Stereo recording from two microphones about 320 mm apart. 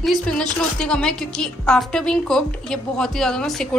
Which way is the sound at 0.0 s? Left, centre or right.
Centre.